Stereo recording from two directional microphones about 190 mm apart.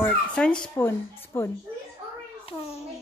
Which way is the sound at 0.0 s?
5° left (ahead or behind).